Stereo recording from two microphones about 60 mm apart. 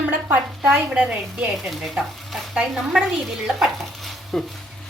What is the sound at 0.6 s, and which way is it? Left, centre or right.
Speech, centre.